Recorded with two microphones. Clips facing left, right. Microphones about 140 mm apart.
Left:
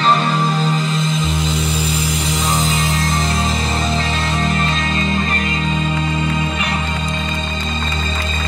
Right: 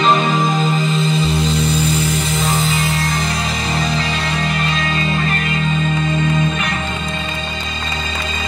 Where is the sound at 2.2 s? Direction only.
20° left (ahead or behind).